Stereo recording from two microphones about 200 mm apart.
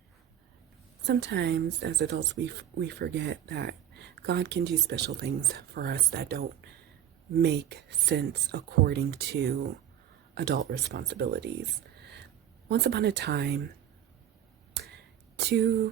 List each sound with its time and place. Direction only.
1.0 s speech: 60° right (ahead or behind)
12.6 s speech: 55° right (ahead or behind)
14.7 s a sound: 55° right (ahead or behind)